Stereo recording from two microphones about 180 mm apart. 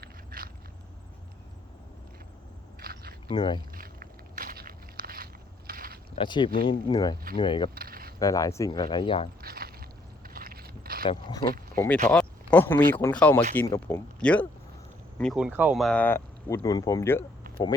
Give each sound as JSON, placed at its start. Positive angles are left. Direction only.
{"t": 0.0, "sound": "scrape", "side_deg": -55}
{"t": 2.8, "sound": "biting", "side_deg": -60}
{"t": 3.2, "sound": "speech", "side_deg": 25}
{"t": 3.8, "sound": "walk", "side_deg": -50}
{"t": 6.1, "sound": "speech", "side_deg": 25}
{"t": 7.8, "sound": "a sound", "side_deg": -55}
{"t": 8.2, "sound": "speech", "side_deg": 20}
{"t": 9.4, "sound": "boat", "side_deg": -55}
{"t": 11.0, "sound": "speech", "side_deg": 25}
{"t": 11.7, "sound": "speech", "side_deg": 10}